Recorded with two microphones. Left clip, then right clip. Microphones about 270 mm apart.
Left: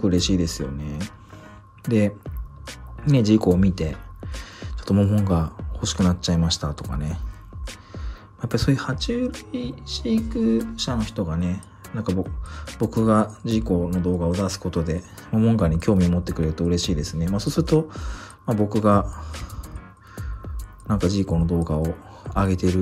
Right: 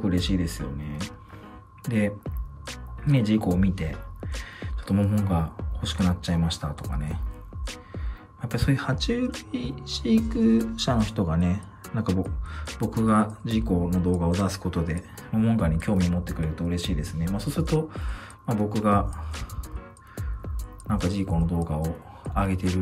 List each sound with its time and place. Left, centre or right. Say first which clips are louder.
0.0 s speech: left 6 dB; centre
20.9 s speech: left 5 dB; centre